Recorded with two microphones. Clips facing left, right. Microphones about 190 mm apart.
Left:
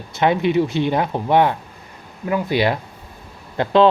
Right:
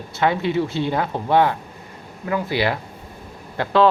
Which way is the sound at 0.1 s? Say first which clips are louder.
Left 3 dB; 20° left (ahead or behind).